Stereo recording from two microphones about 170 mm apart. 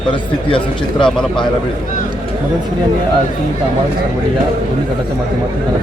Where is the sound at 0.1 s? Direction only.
30° left (ahead or behind).